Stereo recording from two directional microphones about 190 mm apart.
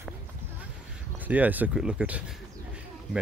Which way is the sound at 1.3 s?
10° right (ahead or behind).